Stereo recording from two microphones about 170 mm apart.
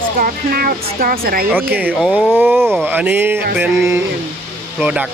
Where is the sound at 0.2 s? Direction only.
60° right (ahead or behind).